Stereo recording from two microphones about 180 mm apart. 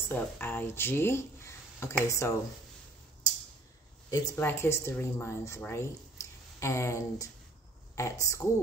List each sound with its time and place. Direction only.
0.1 s speech: 10° left (ahead or behind)
4.1 s speech: 20° left (ahead or behind)